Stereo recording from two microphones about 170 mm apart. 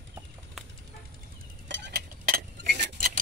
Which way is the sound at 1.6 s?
90° right.